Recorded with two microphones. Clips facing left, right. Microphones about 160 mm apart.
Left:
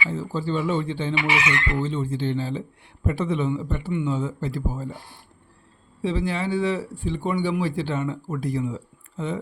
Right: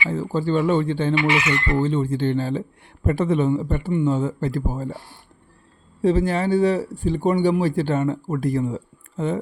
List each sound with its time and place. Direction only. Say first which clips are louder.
0.1 s speech: right 8 dB; 55° right (ahead or behind)
6.0 s speech: right 6 dB; 45° right (ahead or behind)